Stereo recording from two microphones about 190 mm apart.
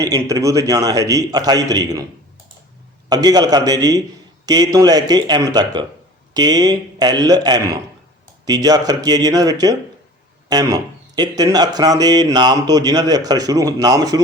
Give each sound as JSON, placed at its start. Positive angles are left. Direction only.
{"t": 0.0, "sound": "speech", "side_deg": -20}
{"t": 3.1, "sound": "speech", "side_deg": -20}